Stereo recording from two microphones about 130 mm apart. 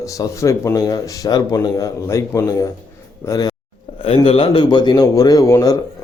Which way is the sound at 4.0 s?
45° left (ahead or behind).